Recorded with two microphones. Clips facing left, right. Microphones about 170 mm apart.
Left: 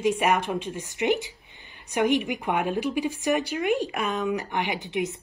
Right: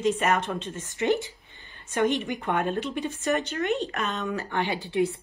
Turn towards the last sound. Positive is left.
turn(degrees=20)  # may be behind; listen again after turning